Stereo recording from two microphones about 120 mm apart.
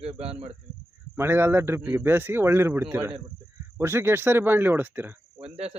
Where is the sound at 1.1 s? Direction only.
20° right (ahead or behind).